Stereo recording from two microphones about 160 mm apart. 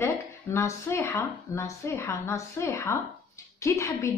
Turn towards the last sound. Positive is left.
turn(degrees=20)  # may be behind; listen again after turning